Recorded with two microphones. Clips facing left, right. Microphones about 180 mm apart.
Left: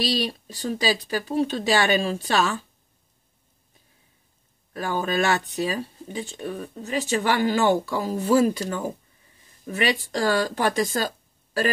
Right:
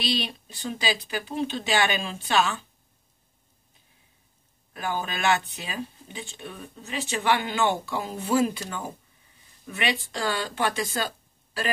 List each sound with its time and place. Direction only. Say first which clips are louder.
0.0 s speech: left 4 dB; 40° left (ahead or behind)
4.7 s speech: left 6 dB; 40° left (ahead or behind)